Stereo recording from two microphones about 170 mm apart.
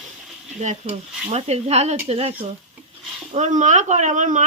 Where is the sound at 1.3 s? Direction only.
40° right (ahead or behind).